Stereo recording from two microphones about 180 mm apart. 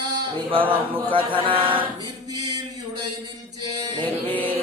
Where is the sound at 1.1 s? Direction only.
30° right (ahead or behind).